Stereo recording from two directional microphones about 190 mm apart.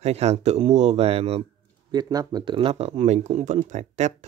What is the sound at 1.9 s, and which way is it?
Speech, 20° right (ahead or behind).